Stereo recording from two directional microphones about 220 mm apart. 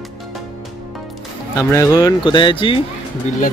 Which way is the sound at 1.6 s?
15° left (ahead or behind).